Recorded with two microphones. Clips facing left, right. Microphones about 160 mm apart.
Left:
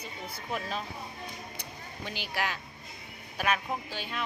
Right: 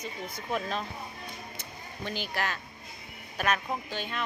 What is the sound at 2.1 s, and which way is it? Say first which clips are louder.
Speech: right 1 dB; 10° left (ahead or behind).